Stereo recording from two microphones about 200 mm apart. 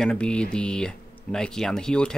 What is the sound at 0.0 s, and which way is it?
Speech, 5° left (ahead or behind).